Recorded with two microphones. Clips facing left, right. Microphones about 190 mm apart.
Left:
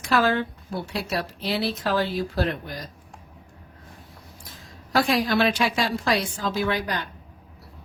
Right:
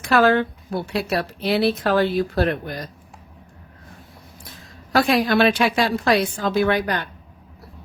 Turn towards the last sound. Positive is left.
turn(degrees=-60)  # may be behind; listen again after turning